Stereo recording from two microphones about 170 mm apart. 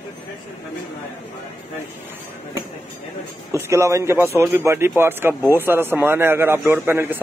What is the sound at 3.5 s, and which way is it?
Speech, 15° right (ahead or behind).